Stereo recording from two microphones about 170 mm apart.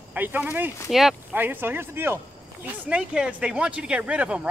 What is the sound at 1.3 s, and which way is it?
Speech, 10° right (ahead or behind).